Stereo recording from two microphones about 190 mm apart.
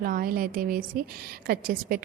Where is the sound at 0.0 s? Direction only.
50° right (ahead or behind).